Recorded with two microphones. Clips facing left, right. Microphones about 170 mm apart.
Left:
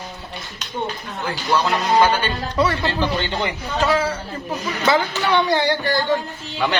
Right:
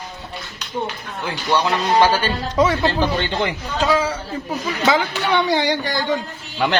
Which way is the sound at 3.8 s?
15° right (ahead or behind).